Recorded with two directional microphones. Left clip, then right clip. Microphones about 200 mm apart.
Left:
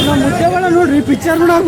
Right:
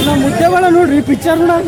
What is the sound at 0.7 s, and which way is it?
Speech, 10° right (ahead or behind).